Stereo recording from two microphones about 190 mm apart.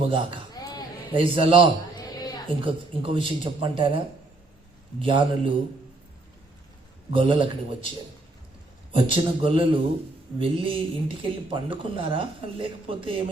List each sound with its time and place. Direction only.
0.0 s speech: 30° right (ahead or behind)
0.5 s a sound: 20° left (ahead or behind)
1.1 s speech: 25° right (ahead or behind)
2.0 s a sound: 20° left (ahead or behind)
2.6 s speech: 30° right (ahead or behind)
7.1 s speech: 25° right (ahead or behind)
9.0 s speech: 25° right (ahead or behind)